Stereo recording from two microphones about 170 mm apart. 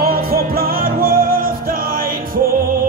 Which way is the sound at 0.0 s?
60° right (ahead or behind).